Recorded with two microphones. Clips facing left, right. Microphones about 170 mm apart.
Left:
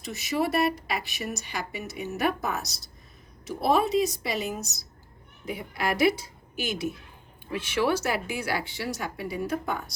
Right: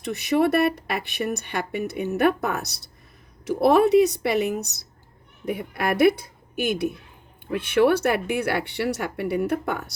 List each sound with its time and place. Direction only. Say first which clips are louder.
0.0 s speech: right 7 dB; 60° right (ahead or behind)